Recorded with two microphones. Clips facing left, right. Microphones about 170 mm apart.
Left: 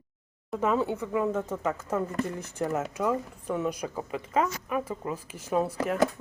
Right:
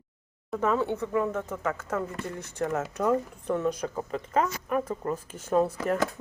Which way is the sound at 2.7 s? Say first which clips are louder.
Right 3 dB; 5° left (ahead or behind).